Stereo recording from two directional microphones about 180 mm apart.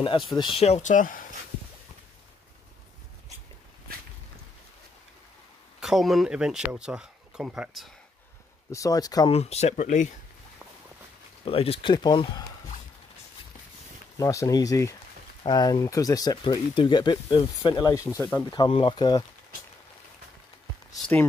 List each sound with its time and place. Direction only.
0.0 s speech: 30° left (ahead or behind); by 1.2 s 45° left (ahead or behind)
5.8 s speech: centre (ahead or behind)
8.7 s speech: 20° left (ahead or behind)
9.3 s speech: 35° left (ahead or behind)
11.4 s speech: 30° left (ahead or behind)
14.2 s speech: 15° left (ahead or behind)
18.1 s speech: 10° left (ahead or behind)
18.5 s speech: 30° left (ahead or behind)